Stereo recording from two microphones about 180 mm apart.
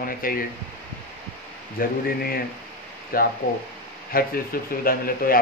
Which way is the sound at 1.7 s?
55° left (ahead or behind).